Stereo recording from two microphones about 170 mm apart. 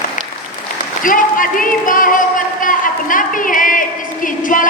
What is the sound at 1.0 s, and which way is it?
A woman's voice, 55° left (ahead or behind).